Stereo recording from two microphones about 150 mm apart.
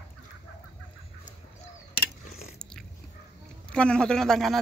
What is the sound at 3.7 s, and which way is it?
Speech, 5° left (ahead or behind).